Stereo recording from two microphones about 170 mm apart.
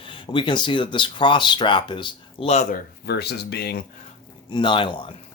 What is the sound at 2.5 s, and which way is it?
Speech, 45° left (ahead or behind).